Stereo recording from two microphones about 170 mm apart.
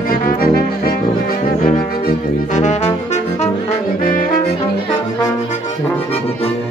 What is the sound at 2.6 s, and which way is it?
Brass instrument, 45° left (ahead or behind).